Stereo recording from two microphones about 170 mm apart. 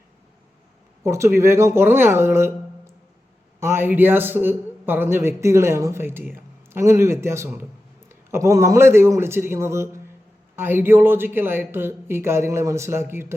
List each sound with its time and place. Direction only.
1.0 s a man's voice: 15° right (ahead or behind)